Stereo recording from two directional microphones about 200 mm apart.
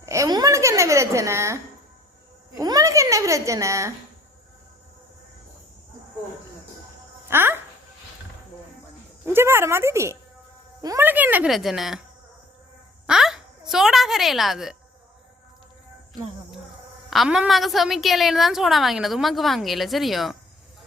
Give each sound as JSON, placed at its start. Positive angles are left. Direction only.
{"t": 0.0, "sound": "a sound", "side_deg": -15}
{"t": 2.6, "sound": "a child's voice", "side_deg": -20}
{"t": 7.3, "sound": "music", "side_deg": -10}
{"t": 9.2, "sound": "a child's voice", "side_deg": -10}
{"t": 13.1, "sound": "a woman's voice", "side_deg": 0}
{"t": 17.1, "sound": "a woman's voice", "side_deg": 0}